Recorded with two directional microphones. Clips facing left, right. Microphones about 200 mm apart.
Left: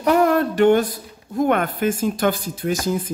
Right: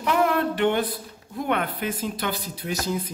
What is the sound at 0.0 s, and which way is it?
A woman's voice, 45° left (ahead or behind).